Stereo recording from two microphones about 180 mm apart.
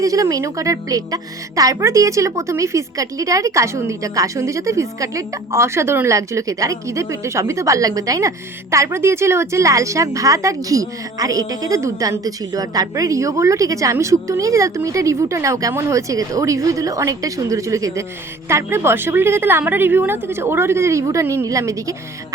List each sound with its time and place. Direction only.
0.0 s a woman's voice: 20° right (ahead or behind)